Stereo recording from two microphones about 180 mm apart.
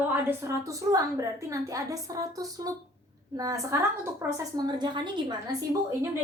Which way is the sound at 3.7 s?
15° right (ahead or behind).